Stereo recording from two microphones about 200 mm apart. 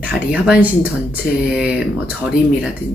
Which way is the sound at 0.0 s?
5° right (ahead or behind).